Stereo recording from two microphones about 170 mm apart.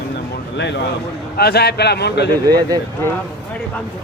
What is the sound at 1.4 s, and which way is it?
Speech, 70° left (ahead or behind).